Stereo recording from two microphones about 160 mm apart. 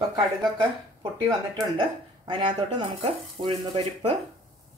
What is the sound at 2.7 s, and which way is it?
A woman's voice, 30° right (ahead or behind).